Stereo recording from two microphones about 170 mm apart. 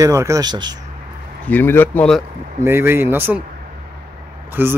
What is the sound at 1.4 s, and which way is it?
Speech, 10° left (ahead or behind).